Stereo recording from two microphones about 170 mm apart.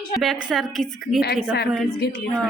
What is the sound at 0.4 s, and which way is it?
Speech, centre (ahead or behind).